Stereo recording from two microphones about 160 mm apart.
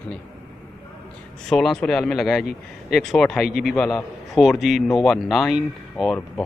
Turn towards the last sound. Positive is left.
turn(degrees=0)  # may be behind; listen again after turning